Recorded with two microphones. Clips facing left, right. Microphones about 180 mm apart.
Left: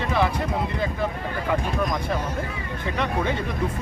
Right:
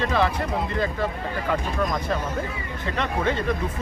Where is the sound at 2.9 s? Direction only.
15° left (ahead or behind).